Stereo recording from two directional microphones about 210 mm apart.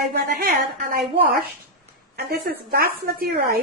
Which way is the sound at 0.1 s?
45° right (ahead or behind).